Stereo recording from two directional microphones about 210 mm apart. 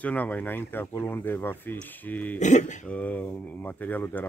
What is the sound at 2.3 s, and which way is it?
Speech, 35° left (ahead or behind).